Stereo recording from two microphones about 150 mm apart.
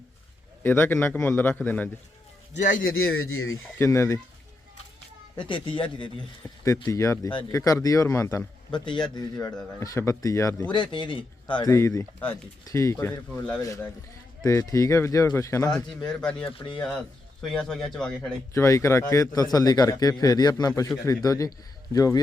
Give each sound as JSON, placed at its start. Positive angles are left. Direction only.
{"t": 0.6, "sound": "a man's voice", "side_deg": 15}
{"t": 2.6, "sound": "a man's voice", "side_deg": 60}
{"t": 3.8, "sound": "a man's voice", "side_deg": 20}
{"t": 5.5, "sound": "a man's voice", "side_deg": 35}
{"t": 6.4, "sound": "a man's voice", "side_deg": 20}
{"t": 8.7, "sound": "a man's voice", "side_deg": 30}
{"t": 10.7, "sound": "a man's voice", "side_deg": 30}
{"t": 11.7, "sound": "a man's voice", "side_deg": 20}
{"t": 14.4, "sound": "a man's voice", "side_deg": 20}
{"t": 16.0, "sound": "speech", "side_deg": 5}
{"t": 16.5, "sound": "a man's voice", "side_deg": 35}
{"t": 16.7, "sound": "a man's voice", "side_deg": 5}
{"t": 18.5, "sound": "a man's voice", "side_deg": 20}